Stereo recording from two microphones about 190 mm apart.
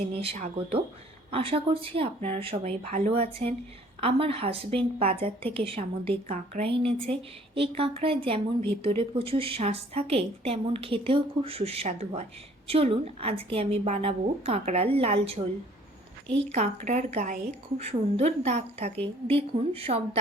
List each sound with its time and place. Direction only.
0.1 s a woman's voice: 30° right (ahead or behind)